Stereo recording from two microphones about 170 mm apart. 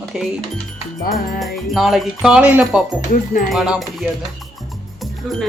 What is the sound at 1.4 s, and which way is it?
Speech, centre (ahead or behind).